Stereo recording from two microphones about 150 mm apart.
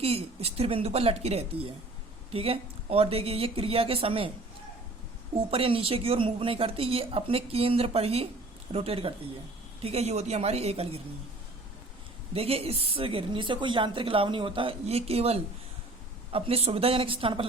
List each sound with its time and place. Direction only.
0.0 s a woman's voice: 40° right (ahead or behind)
5.5 s a woman's voice: 35° right (ahead or behind)
12.3 s a woman's voice: 40° right (ahead or behind)